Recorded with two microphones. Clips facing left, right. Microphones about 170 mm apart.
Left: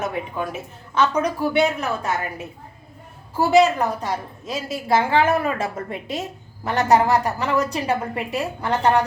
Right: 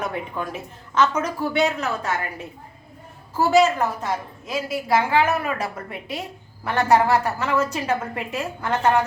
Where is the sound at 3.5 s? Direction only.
15° left (ahead or behind).